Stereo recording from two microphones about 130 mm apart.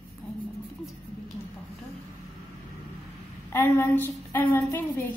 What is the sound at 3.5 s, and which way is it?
A woman's voice, 20° left (ahead or behind).